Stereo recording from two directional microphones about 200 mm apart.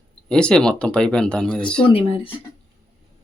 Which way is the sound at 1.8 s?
30° left (ahead or behind).